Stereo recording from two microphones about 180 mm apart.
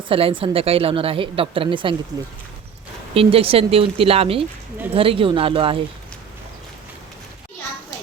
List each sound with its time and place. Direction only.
0.1 s a woman's voice: 30° right (ahead or behind)
3.2 s a woman's voice: 30° right (ahead or behind)